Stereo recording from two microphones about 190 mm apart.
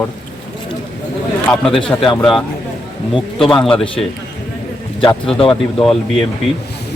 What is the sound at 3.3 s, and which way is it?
Speech, centre (ahead or behind).